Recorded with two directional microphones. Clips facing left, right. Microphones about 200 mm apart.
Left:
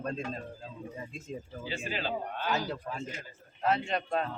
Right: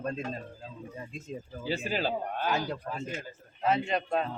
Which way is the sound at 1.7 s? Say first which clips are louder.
Right 4 dB; 40° right (ahead or behind).